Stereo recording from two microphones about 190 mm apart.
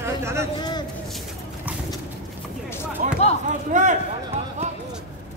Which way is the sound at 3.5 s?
40° right (ahead or behind).